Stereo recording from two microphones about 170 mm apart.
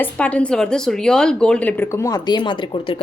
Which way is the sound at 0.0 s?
5° left (ahead or behind).